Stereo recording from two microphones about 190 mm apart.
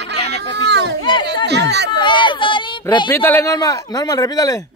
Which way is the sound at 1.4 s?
60° right (ahead or behind).